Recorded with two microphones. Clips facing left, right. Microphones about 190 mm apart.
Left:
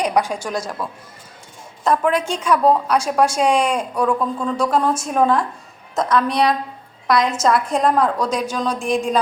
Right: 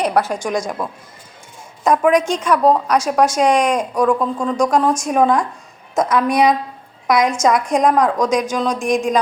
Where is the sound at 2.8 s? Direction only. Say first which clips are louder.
Right 2 dB; 10° right (ahead or behind).